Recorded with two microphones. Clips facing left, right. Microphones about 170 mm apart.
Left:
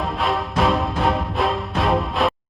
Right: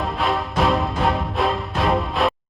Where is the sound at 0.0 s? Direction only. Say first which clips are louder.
Even; centre (ahead or behind).